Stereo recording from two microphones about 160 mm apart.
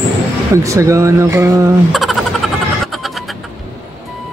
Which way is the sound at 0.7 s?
20° right (ahead or behind).